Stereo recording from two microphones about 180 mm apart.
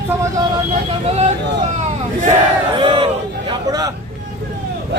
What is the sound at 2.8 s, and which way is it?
Crowd, 30° right (ahead or behind).